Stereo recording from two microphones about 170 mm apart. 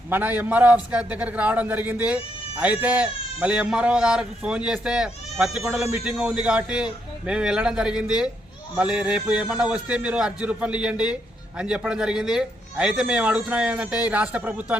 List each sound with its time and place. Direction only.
0.1 s a man's voice: 10° right (ahead or behind)